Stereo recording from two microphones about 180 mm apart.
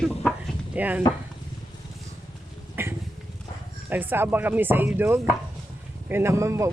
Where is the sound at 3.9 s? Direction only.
10° right (ahead or behind).